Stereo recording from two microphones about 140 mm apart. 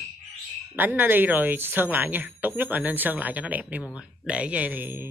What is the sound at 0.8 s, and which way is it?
Speech, 15° right (ahead or behind).